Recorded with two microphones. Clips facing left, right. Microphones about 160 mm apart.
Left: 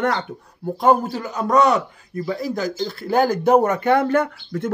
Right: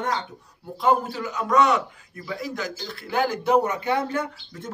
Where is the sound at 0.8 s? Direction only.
45° left (ahead or behind).